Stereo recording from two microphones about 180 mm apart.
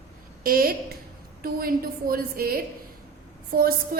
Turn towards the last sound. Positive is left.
turn(degrees=-55)  # may be behind; listen again after turning